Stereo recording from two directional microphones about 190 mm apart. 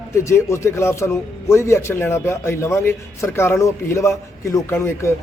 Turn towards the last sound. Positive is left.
turn(degrees=15)  # may be behind; listen again after turning